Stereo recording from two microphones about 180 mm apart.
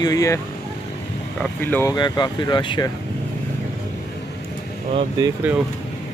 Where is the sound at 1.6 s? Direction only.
15° left (ahead or behind).